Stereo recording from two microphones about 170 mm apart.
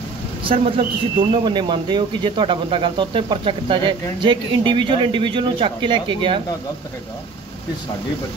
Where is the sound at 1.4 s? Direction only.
25° right (ahead or behind).